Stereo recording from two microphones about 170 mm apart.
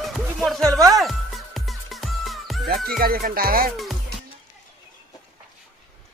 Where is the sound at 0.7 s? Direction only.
20° right (ahead or behind).